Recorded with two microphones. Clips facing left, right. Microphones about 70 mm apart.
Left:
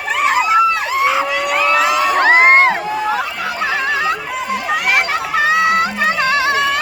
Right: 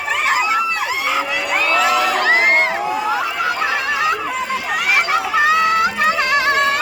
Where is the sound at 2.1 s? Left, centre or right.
Left.